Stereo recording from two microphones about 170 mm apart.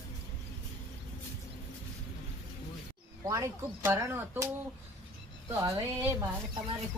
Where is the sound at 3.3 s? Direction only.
15° right (ahead or behind).